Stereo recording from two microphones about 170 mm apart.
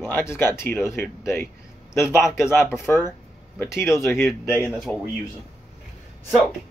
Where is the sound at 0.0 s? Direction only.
15° left (ahead or behind).